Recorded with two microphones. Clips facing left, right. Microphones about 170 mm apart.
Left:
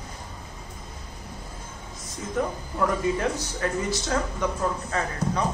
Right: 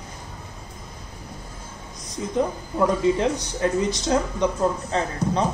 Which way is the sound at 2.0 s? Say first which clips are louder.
Right 4 dB; 20° right (ahead or behind).